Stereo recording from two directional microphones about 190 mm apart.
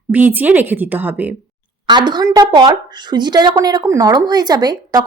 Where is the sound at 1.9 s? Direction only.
25° right (ahead or behind).